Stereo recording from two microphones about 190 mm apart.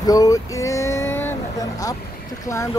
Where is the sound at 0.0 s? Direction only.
20° left (ahead or behind).